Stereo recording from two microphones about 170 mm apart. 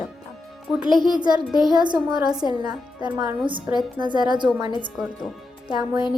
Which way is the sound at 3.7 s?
25° right (ahead or behind).